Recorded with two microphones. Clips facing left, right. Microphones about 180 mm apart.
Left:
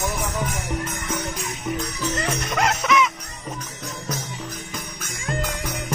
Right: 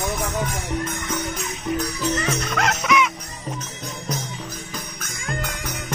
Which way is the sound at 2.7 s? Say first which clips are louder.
Even; centre (ahead or behind).